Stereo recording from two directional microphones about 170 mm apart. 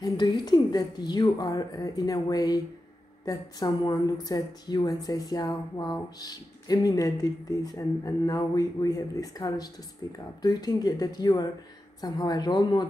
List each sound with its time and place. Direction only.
0.0 s a woman's voice: 25° left (ahead or behind)